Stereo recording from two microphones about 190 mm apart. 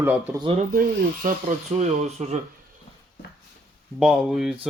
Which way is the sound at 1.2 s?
45° right (ahead or behind).